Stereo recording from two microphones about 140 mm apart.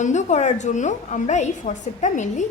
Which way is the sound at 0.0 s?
60° left (ahead or behind).